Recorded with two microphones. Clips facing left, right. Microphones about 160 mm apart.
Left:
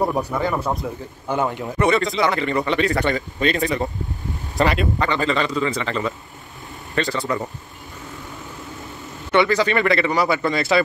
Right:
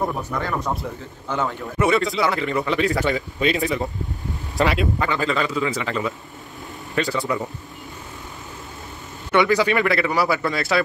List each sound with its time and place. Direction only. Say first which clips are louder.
0.3 s a man's voice: left 3 dB; 15° left (ahead or behind)
1.8 s speech: left 1 dB; centre (ahead or behind)
9.3 s speech: even; 10° right (ahead or behind)